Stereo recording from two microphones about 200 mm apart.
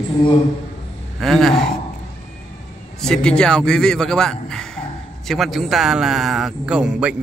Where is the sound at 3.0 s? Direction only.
5° left (ahead or behind).